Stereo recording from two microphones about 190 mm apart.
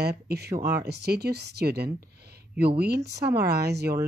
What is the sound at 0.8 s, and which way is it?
Speech, 60° right (ahead or behind).